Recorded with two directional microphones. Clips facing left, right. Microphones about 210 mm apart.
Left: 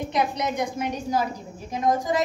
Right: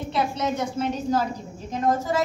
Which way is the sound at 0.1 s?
15° left (ahead or behind).